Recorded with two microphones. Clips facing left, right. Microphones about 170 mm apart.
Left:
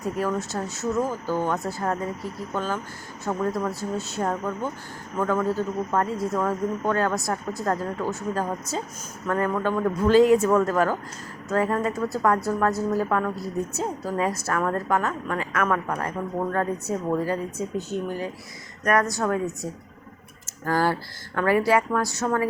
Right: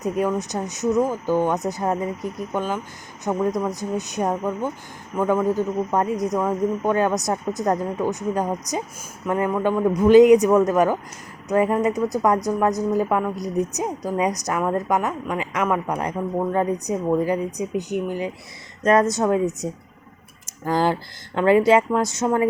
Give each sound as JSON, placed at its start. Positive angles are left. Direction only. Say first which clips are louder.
{"t": 0.0, "sound": "a woman's voice", "louder": "right 4 dB", "side_deg": -20}
{"t": 20.5, "sound": "speech", "louder": "right 2 dB", "side_deg": -20}